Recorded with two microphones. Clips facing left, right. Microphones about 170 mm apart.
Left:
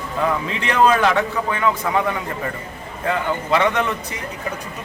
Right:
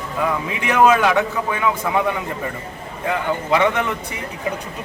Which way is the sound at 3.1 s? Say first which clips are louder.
Even; 10° right (ahead or behind).